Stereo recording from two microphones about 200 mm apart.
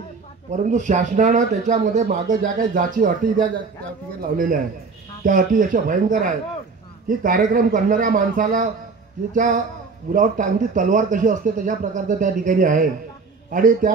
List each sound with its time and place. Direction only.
0.5 s a man's voice: 35° right (ahead or behind)
5.2 s a man's voice: 40° right (ahead or behind)